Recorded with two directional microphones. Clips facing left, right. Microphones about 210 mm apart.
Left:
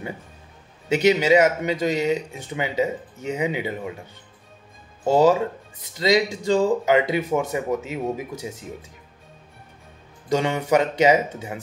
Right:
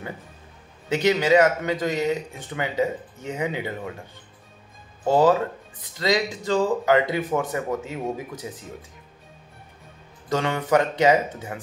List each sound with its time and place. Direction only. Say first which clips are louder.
0.9 s speech: left 2 dB; 15° left (ahead or behind)
5.0 s speech: left 1 dB; 15° left (ahead or behind)
10.3 s speech: left 1 dB; 20° left (ahead or behind)